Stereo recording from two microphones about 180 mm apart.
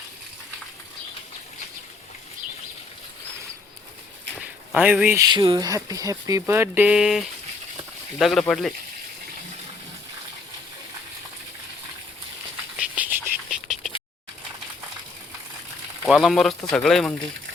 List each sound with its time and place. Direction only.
4.7 s speech: 5° right (ahead or behind)
5.2 s speech: 25° right (ahead or behind); by 8.7 s centre (ahead or behind)
13.0 s a sound: 10° right (ahead or behind)
16.0 s speech: centre (ahead or behind)